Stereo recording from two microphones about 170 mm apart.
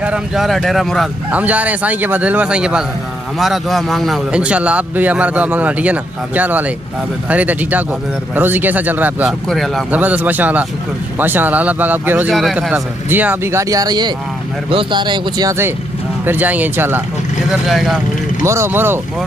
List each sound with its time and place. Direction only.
0.0 s a man's voice: 5° right (ahead or behind)
9.5 s speech: centre (ahead or behind)
9.8 s a man's voice: 10° right (ahead or behind)
12.4 s a man's voice: centre (ahead or behind)
17.5 s speech: centre (ahead or behind)
18.4 s a man's voice: 15° right (ahead or behind)